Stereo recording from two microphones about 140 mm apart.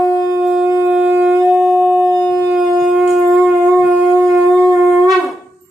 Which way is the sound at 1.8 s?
15° right (ahead or behind).